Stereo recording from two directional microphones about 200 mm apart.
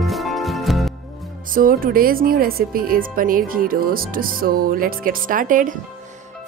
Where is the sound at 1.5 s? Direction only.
45° right (ahead or behind).